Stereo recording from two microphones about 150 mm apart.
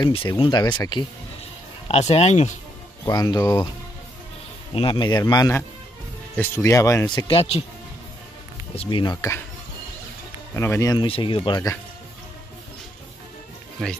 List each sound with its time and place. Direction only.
0.0 s speech: 35° left (ahead or behind)
1.9 s speech: 45° left (ahead or behind)
3.1 s speech: 25° left (ahead or behind)
4.7 s speech: 35° left (ahead or behind)
7.1 s speech: 35° left (ahead or behind)
8.8 s speech: 30° left (ahead or behind)
10.5 s speech: 15° left (ahead or behind)
11.1 s speech: 35° left (ahead or behind)
13.8 s speech: 5° left (ahead or behind)